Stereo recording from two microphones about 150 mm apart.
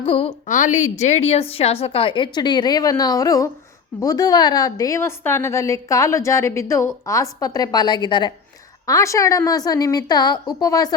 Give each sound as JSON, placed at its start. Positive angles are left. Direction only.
{"t": 0.0, "sound": "a woman's voice", "side_deg": 35}
{"t": 0.4, "sound": "a woman's voice", "side_deg": 55}